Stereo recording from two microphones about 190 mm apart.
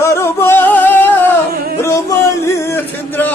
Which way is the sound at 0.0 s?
15° left (ahead or behind).